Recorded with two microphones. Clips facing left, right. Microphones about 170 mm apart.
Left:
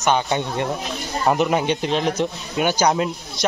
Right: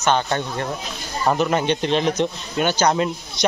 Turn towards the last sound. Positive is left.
turn(degrees=0)  # may be behind; listen again after turning